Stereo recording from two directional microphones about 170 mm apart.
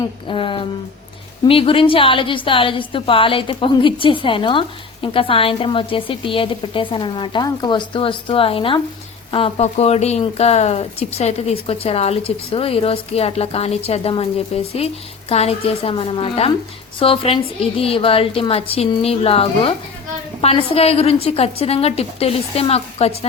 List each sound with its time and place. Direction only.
0.3 s speech: 30° left (ahead or behind)